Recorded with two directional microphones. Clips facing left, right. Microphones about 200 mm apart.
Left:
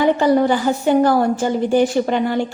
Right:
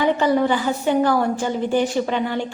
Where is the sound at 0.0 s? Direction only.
40° left (ahead or behind).